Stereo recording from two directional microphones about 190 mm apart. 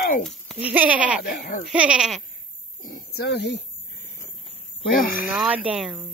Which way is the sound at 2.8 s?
45° left (ahead or behind).